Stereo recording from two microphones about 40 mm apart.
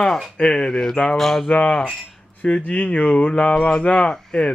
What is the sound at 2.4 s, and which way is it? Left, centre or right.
Speech, left.